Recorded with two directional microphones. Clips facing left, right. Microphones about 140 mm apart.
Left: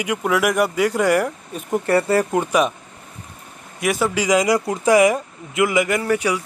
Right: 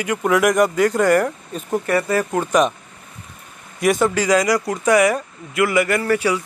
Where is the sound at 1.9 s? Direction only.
30° left (ahead or behind).